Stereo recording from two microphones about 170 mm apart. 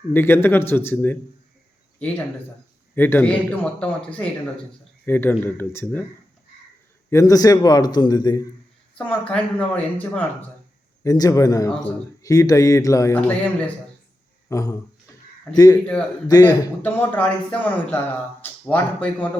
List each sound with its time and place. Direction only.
0.1 s a man's voice: 15° left (ahead or behind)
2.9 s a man's voice: 10° left (ahead or behind)
7.1 s a man's voice: 20° left (ahead or behind)
9.0 s a man's voice: 5° left (ahead or behind)
11.0 s a man's voice: 20° left (ahead or behind)
14.5 s a man's voice: 20° left (ahead or behind)
15.7 s a man's voice: 5° left (ahead or behind)